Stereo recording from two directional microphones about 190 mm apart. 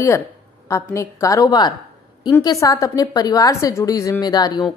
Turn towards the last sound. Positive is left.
turn(degrees=20)  # may be behind; listen again after turning